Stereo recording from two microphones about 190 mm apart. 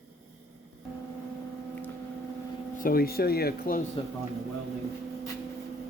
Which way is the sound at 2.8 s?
50° left (ahead or behind).